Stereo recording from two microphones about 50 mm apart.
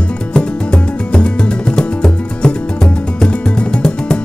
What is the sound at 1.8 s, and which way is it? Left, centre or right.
Music, centre.